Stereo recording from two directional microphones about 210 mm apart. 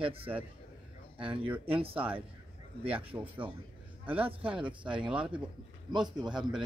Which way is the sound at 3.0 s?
25° right (ahead or behind).